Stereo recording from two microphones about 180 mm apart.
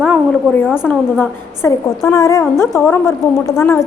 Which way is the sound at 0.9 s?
10° left (ahead or behind).